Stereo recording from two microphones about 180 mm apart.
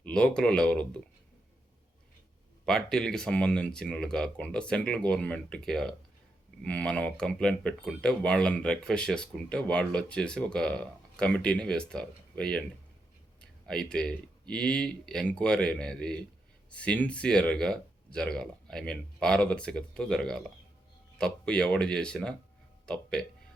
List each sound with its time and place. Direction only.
0.0 s speech: 5° left (ahead or behind)
2.6 s speech: 5° left (ahead or behind)